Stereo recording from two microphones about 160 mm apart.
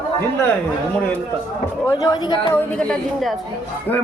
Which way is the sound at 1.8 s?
25° left (ahead or behind).